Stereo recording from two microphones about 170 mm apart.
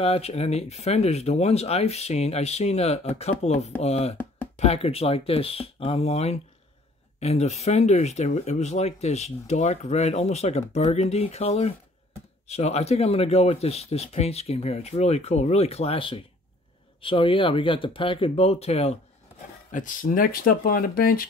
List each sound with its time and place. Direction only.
0.0 s speech: 35° left (ahead or behind)
19.7 s speech: 50° left (ahead or behind)